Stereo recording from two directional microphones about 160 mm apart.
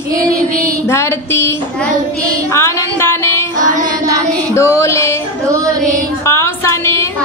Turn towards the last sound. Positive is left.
turn(degrees=15)  # may be behind; listen again after turning